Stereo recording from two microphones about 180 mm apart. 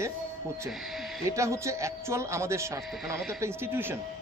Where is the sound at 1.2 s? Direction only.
15° right (ahead or behind).